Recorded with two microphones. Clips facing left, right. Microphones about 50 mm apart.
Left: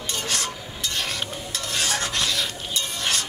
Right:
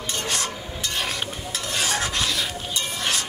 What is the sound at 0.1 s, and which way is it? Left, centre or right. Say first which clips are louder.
Stir: right 1 dB; centre.